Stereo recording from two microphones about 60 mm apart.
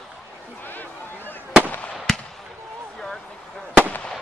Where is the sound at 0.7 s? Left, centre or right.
Left.